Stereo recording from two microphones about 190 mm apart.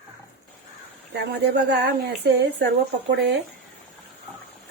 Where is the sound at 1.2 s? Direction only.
60° right (ahead or behind).